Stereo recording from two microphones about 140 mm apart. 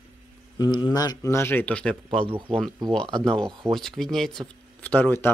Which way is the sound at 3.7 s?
5° left (ahead or behind).